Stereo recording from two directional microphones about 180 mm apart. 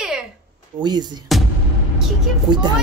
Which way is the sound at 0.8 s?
25° right (ahead or behind).